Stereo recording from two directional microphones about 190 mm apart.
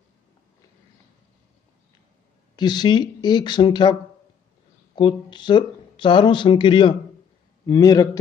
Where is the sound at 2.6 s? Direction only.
25° left (ahead or behind).